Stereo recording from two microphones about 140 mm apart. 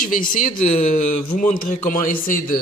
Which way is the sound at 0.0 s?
75° left (ahead or behind).